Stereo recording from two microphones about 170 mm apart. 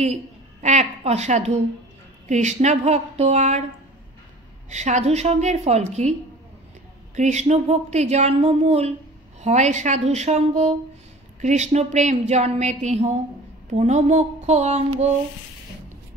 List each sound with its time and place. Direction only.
0.0 s a woman's voice: 40° right (ahead or behind)
4.6 s a woman's voice: 45° right (ahead or behind)
7.2 s a woman's voice: 40° right (ahead or behind)